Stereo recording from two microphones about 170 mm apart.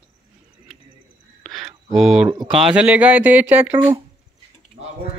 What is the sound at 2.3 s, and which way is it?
Speech, 25° right (ahead or behind).